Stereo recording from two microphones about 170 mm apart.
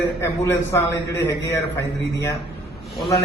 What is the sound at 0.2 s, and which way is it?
A man's voice, 15° left (ahead or behind).